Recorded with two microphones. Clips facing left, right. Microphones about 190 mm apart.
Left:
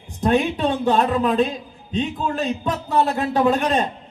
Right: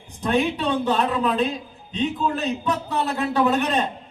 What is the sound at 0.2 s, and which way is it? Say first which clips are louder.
A man's voice: left 3 dB; 45° left (ahead or behind).